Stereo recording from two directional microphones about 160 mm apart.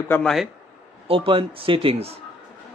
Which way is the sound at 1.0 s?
35° right (ahead or behind).